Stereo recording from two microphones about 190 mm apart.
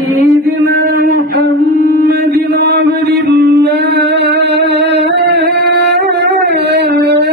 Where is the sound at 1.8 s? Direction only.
55° right (ahead or behind).